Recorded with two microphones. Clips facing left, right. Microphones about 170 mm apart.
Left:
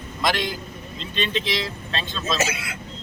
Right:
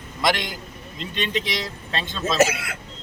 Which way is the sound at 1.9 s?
15° right (ahead or behind).